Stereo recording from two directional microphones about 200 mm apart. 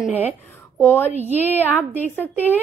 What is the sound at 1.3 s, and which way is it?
Speech, 10° right (ahead or behind).